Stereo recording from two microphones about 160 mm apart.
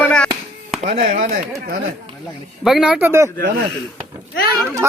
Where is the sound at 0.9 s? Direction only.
60° right (ahead or behind).